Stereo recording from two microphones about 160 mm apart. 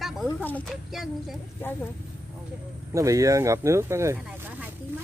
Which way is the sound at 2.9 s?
20° right (ahead or behind).